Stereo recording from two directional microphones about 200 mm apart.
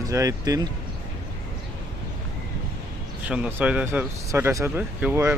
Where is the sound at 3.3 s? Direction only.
5° right (ahead or behind).